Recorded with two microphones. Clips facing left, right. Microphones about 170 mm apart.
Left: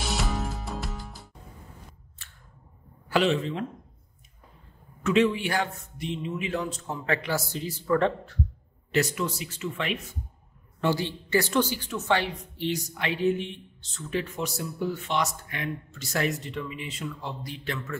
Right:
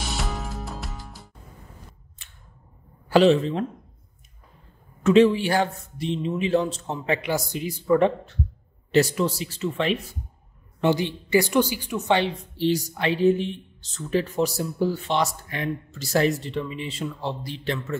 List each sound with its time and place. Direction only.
0.1 s music: centre (ahead or behind)
2.2 s a sound: 15° right (ahead or behind)
3.1 s a woman's voice: 35° right (ahead or behind)
5.0 s a man's voice: 35° right (ahead or behind); by 8.4 s 15° right (ahead or behind)
8.9 s a woman's voice: 30° right (ahead or behind)
10.8 s a woman's voice: 20° right (ahead or behind)